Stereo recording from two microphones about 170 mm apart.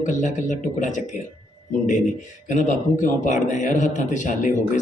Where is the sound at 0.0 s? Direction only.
45° left (ahead or behind).